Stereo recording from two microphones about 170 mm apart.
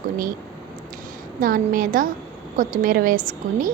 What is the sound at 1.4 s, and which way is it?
A woman's voice, 55° right (ahead or behind).